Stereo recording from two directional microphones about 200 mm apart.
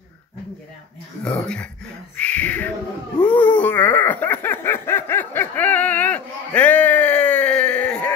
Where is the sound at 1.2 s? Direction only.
5° left (ahead or behind).